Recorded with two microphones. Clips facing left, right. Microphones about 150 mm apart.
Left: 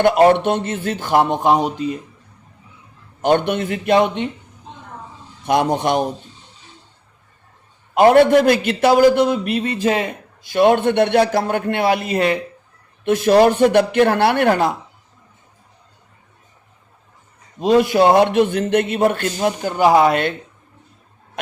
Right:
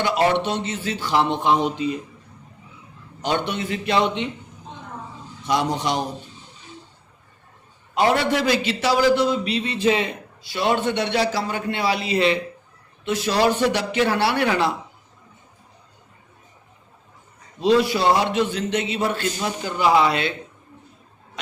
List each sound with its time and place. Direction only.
0.0 s a man's voice: 50° left (ahead or behind)
3.2 s a man's voice: 50° left (ahead or behind)
5.5 s a man's voice: 55° left (ahead or behind)
7.9 s a man's voice: 50° left (ahead or behind)
17.6 s a man's voice: 50° left (ahead or behind)